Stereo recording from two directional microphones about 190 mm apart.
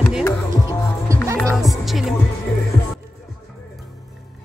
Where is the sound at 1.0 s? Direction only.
15° right (ahead or behind).